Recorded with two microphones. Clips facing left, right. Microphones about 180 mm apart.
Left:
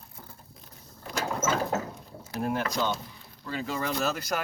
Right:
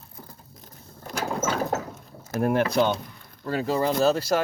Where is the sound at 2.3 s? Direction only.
60° right (ahead or behind).